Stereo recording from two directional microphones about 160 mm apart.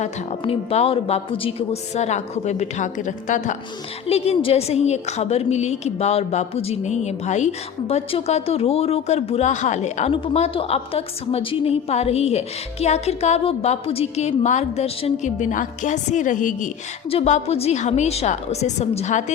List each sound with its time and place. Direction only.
0.0 s a woman's voice: 40° left (ahead or behind)
4.0 s a woman's voice: 40° left (ahead or behind); by 16.6 s 55° left (ahead or behind)
17.1 s a woman's voice: 40° left (ahead or behind)